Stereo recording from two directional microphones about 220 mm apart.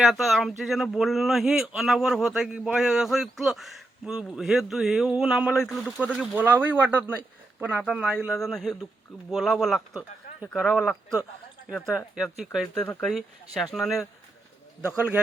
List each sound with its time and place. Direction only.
0.0 s speech: centre (ahead or behind)